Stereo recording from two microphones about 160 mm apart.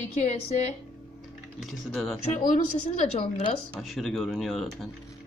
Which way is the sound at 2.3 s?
55° left (ahead or behind).